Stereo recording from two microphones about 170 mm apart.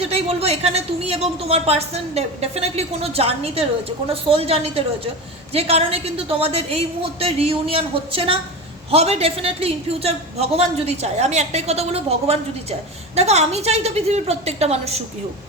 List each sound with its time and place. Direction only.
0.0 s speech: 35° right (ahead or behind)